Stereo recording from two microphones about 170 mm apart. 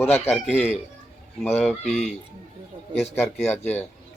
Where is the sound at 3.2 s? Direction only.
10° left (ahead or behind).